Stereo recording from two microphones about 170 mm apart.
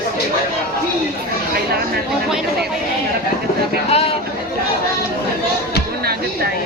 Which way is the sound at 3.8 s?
35° left (ahead or behind).